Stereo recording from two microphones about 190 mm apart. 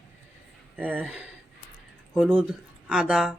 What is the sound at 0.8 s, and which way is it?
Speech, 10° right (ahead or behind).